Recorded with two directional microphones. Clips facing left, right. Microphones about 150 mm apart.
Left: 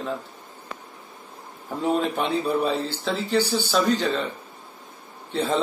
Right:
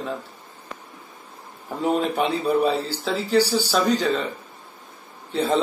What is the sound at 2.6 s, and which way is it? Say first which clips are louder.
Speech: right 3 dB; 35° right (ahead or behind).